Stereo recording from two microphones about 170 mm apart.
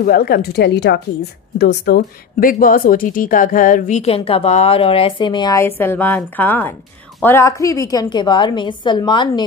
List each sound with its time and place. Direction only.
0.0 s speech: 65° left (ahead or behind); by 5.7 s 20° left (ahead or behind)
5.8 s a woman's voice: 10° left (ahead or behind)